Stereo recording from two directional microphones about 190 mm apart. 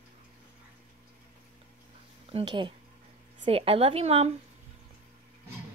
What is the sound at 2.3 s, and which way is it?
Speech, 25° right (ahead or behind).